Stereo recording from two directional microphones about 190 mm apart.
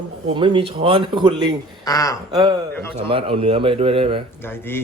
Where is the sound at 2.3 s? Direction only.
20° right (ahead or behind).